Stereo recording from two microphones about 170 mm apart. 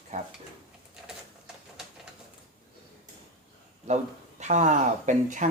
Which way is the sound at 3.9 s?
40° right (ahead or behind).